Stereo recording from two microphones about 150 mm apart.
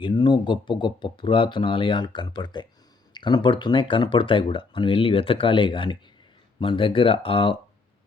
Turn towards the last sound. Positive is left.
turn(degrees=35)  # may be behind; listen again after turning